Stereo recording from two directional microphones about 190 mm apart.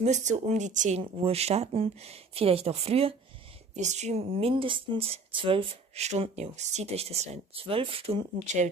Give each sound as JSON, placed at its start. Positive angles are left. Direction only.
{"t": 0.0, "sound": "speech", "side_deg": -40}